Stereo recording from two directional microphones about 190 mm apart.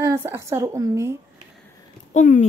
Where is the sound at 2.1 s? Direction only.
40° left (ahead or behind).